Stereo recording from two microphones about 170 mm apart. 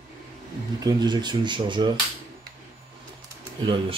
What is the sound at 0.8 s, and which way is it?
Speech, 25° right (ahead or behind).